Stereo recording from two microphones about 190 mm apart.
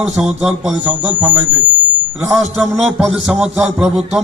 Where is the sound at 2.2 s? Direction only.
Centre (ahead or behind).